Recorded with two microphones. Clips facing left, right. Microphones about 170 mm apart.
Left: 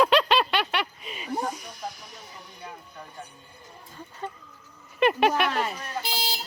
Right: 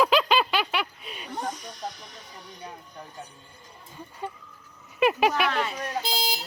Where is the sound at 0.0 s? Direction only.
Centre (ahead or behind).